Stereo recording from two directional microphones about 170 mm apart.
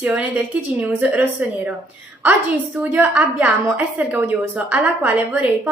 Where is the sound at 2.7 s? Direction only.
10° right (ahead or behind).